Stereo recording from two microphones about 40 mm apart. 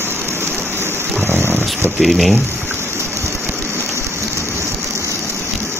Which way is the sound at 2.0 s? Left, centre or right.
Centre.